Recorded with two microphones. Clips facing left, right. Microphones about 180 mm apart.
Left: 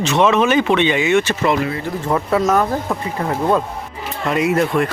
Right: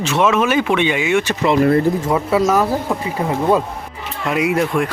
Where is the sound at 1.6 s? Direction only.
50° right (ahead or behind).